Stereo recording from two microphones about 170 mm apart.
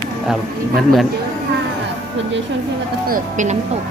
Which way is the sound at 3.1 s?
45° right (ahead or behind).